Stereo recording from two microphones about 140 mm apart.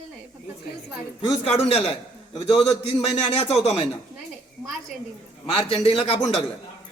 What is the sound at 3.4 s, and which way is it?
Speech, 45° left (ahead or behind).